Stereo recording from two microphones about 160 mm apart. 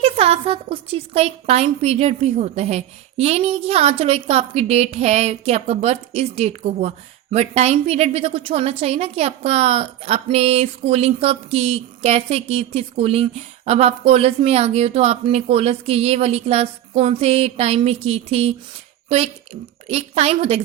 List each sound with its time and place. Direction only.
0.0 s a woman's voice: 40° right (ahead or behind)